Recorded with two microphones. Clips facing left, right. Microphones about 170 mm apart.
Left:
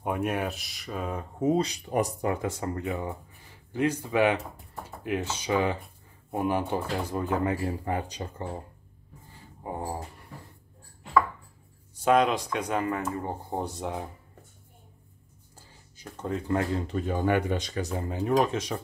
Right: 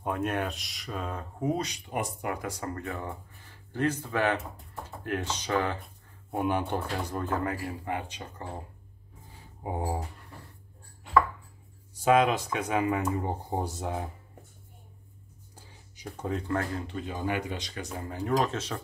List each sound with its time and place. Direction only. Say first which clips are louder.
0.0 s speech: left 1 dB; 10° left (ahead or behind)
1.1 s speech: left 6 dB; 25° left (ahead or behind)
7.4 s speech: left 4 dB; 30° left (ahead or behind)
9.6 s speech: right 1 dB; 15° right (ahead or behind)
12.0 s speech: even; centre (ahead or behind)
13.7 s speech: even; centre (ahead or behind)
15.5 s a sound: right 1 dB; 15° right (ahead or behind)
16.7 s speech: left 6 dB; 40° left (ahead or behind)
17.9 s speech: left 3 dB; 20° left (ahead or behind)